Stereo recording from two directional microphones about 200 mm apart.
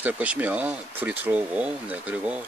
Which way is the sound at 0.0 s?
5° right (ahead or behind).